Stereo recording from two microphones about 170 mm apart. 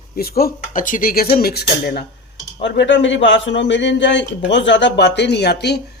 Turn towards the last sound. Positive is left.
turn(degrees=75)  # may be behind; listen again after turning